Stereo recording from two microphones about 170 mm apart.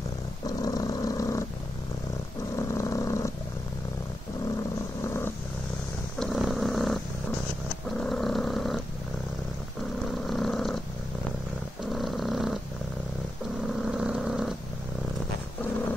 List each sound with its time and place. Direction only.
0.6 s vehicle: 20° left (ahead or behind)
2.5 s purr: 20° left (ahead or behind)
5.0 s vehicle: 15° left (ahead or behind)
6.1 s purr: centre (ahead or behind)
8.0 s a sound: centre (ahead or behind)
10.2 s purr: centre (ahead or behind)
11.9 s a sound: centre (ahead or behind)
13.8 s vehicle: 5° right (ahead or behind)